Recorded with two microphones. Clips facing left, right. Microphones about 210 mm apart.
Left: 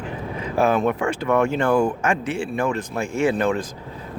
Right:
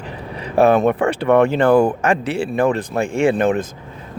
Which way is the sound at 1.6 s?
35° right (ahead or behind).